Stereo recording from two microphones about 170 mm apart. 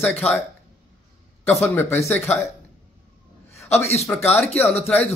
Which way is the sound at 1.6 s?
10° left (ahead or behind).